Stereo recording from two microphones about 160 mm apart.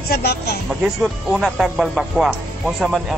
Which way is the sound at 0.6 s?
Centre (ahead or behind).